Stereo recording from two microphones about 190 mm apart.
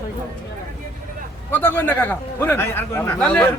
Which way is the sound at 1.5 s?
10° left (ahead or behind).